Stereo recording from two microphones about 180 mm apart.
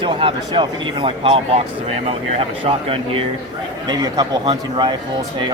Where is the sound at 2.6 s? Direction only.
30° right (ahead or behind).